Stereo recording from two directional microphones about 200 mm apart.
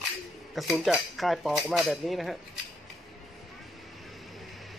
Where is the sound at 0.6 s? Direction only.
Centre (ahead or behind).